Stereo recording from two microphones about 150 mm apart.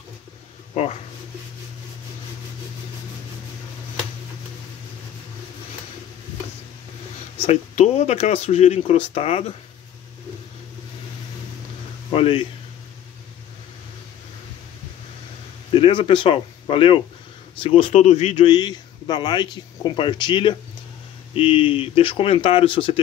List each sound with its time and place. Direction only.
0.8 s speech: 50° left (ahead or behind)
7.4 s speech: 45° left (ahead or behind)
12.1 s speech: 40° left (ahead or behind)
15.7 s a man's voice: 35° left (ahead or behind)